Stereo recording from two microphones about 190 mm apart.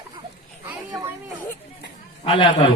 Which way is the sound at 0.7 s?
20° right (ahead or behind).